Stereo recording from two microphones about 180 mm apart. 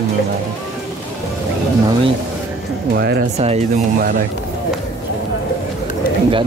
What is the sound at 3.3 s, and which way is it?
Speech, 35° right (ahead or behind).